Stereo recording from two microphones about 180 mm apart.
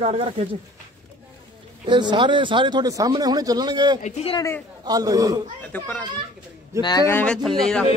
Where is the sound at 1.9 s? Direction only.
25° right (ahead or behind).